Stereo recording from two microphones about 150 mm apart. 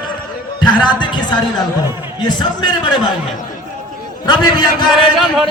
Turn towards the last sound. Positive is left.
turn(degrees=0)  # may be behind; listen again after turning